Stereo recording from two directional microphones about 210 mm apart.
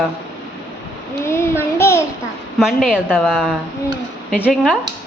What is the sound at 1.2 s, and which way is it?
Child singing, 10° left (ahead or behind).